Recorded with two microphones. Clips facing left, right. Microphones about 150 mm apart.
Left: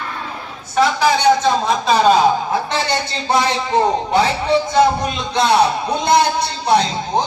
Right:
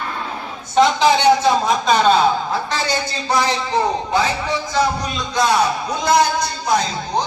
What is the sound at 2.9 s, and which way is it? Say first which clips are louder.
A man's voice: left 2 dB; 25° left (ahead or behind).